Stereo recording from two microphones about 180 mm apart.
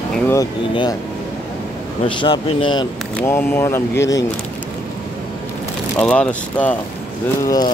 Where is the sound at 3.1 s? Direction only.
10° left (ahead or behind).